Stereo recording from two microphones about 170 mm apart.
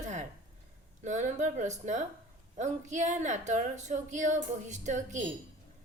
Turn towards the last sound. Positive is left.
turn(degrees=-45)  # may be behind; listen again after turning